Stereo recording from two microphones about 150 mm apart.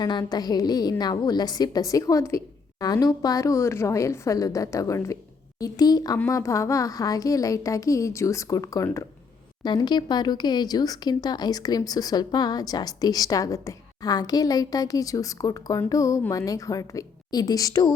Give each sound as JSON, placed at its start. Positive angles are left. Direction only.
{"t": 0.0, "sound": "speech", "side_deg": 30}